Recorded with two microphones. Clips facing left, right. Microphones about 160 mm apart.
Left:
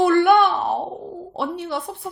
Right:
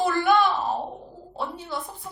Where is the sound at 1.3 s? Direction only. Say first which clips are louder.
Left 5 dB; 70° left (ahead or behind).